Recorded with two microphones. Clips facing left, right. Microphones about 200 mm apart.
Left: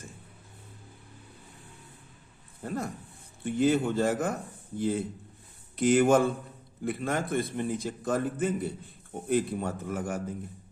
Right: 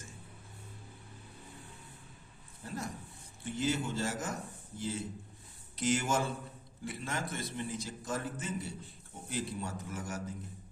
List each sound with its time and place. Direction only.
2.6 s a man's voice: 55° left (ahead or behind)